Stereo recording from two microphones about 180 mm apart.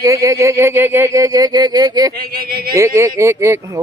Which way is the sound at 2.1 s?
55° right (ahead or behind).